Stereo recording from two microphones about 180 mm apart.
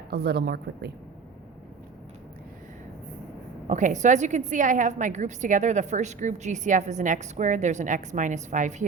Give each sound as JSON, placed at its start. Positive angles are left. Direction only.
{"t": 0.1, "sound": "a woman's voice", "side_deg": -65}
{"t": 3.7, "sound": "a woman's voice", "side_deg": -45}